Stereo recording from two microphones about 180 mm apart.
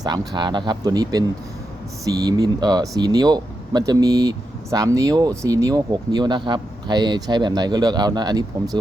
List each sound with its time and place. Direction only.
0.0 s speech: 20° right (ahead or behind)